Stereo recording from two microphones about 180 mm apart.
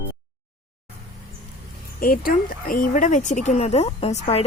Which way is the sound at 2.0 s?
55° left (ahead or behind).